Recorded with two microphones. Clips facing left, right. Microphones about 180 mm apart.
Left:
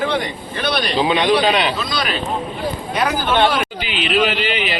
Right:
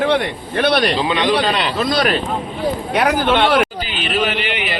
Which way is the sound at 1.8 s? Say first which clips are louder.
Right 6 dB; 55° right (ahead or behind).